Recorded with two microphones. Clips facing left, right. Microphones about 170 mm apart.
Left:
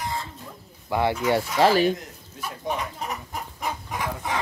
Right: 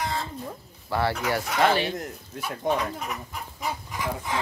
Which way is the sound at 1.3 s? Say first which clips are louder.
Left 4 dB; 35° left (ahead or behind).